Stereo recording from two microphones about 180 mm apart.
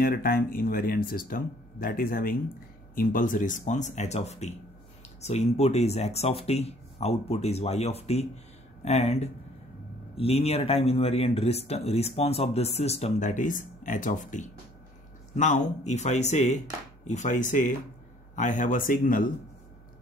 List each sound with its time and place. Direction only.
0.0 s speech: 55° left (ahead or behind)